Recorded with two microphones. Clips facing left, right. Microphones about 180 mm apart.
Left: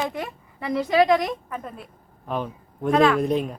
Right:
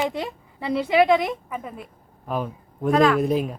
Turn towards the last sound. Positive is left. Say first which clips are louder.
# even
turn(degrees=-5)  # may be behind; listen again after turning